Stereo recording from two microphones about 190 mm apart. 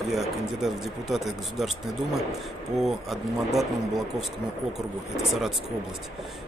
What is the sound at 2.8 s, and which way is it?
Speech, centre (ahead or behind).